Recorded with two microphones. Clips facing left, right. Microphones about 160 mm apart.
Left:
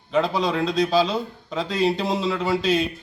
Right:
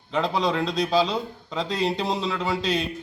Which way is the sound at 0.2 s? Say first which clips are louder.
Left 2 dB; 20° right (ahead or behind).